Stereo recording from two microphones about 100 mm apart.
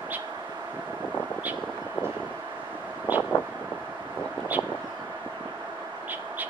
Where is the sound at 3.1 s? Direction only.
20° right (ahead or behind).